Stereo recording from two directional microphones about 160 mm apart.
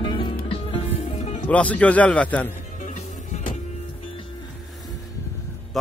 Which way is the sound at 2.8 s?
50° left (ahead or behind).